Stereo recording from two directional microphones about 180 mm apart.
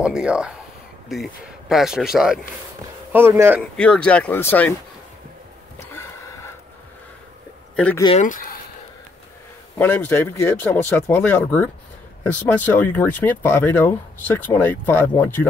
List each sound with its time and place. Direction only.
0.0 s speech: 5° right (ahead or behind)
3.1 s speech: 15° right (ahead or behind)
3.7 s speech: 5° left (ahead or behind)
7.7 s speech: 5° left (ahead or behind)
8.2 s speech: 50° left (ahead or behind)
9.8 s speech: 10° left (ahead or behind)